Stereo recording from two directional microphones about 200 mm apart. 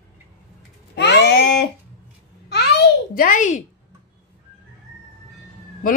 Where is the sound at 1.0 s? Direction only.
60° left (ahead or behind).